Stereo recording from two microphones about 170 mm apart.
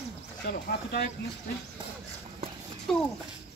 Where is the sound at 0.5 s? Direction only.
75° left (ahead or behind).